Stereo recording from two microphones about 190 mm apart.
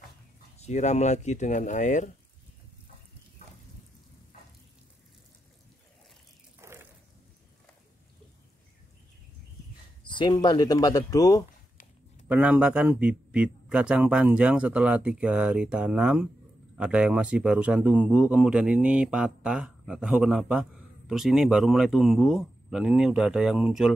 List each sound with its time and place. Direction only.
0.6 s speech: 35° left (ahead or behind)
6.6 s a sound: 15° right (ahead or behind)
10.1 s speech: 20° left (ahead or behind)
12.3 s a man's voice: 5° right (ahead or behind)